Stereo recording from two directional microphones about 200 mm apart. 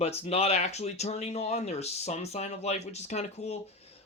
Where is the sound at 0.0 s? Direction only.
30° left (ahead or behind).